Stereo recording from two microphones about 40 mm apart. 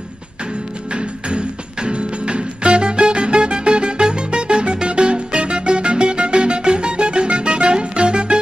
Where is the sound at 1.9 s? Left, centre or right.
Right.